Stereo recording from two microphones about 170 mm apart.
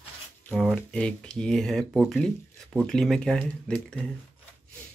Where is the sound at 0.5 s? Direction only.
5° left (ahead or behind).